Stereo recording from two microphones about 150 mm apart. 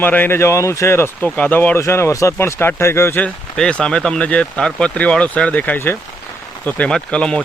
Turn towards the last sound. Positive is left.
turn(degrees=5)  # may be behind; listen again after turning